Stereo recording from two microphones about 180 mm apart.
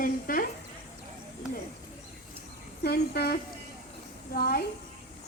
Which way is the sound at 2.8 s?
60° left (ahead or behind).